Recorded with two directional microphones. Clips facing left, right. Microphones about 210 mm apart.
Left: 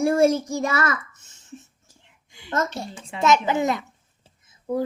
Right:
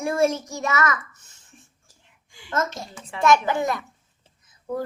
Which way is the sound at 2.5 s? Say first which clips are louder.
Left 1 dB; 35° left (ahead or behind).